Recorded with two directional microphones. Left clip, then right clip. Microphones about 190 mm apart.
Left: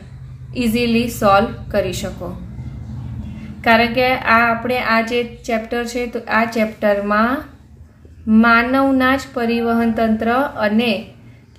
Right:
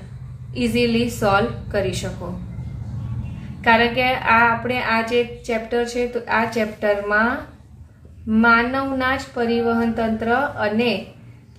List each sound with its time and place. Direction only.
0.6 s a woman's voice: 30° left (ahead or behind)
3.6 s a woman's voice: 30° left (ahead or behind)